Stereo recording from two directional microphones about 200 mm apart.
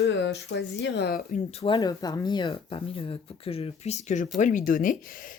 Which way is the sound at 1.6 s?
20° left (ahead or behind).